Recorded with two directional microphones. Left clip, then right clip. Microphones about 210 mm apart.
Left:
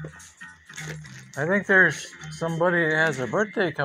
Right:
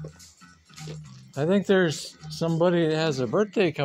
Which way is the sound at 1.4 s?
50° right (ahead or behind).